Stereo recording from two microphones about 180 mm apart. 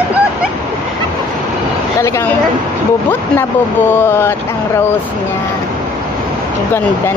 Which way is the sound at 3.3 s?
10° left (ahead or behind).